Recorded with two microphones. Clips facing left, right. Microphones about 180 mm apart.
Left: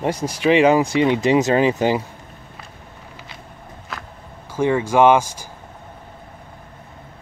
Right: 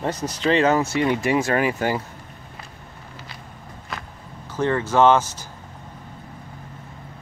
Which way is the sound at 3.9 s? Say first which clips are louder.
Even; centre (ahead or behind).